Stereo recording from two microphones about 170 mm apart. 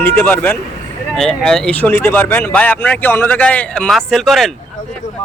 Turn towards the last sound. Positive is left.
turn(degrees=0)  # may be behind; listen again after turning